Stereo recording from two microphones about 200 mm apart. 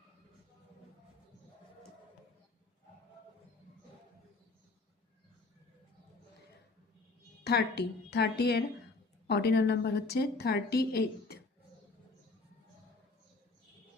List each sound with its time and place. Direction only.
7.4 s a woman's voice: 55° left (ahead or behind)